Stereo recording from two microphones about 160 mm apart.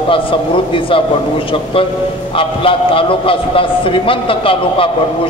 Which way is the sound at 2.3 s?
35° left (ahead or behind).